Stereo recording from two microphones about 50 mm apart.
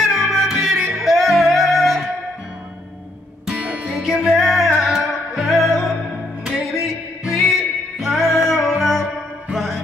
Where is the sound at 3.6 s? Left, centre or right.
Right.